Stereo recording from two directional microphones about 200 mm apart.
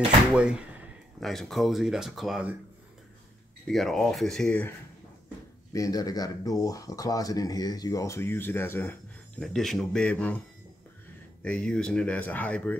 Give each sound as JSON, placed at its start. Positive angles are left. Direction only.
{"t": 0.3, "sound": "speech", "side_deg": -5}
{"t": 3.6, "sound": "speech", "side_deg": 0}
{"t": 5.7, "sound": "speech", "side_deg": 15}
{"t": 11.4, "sound": "speech", "side_deg": 5}